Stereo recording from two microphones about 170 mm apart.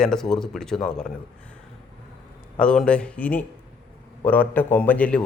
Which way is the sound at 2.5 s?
5° left (ahead or behind).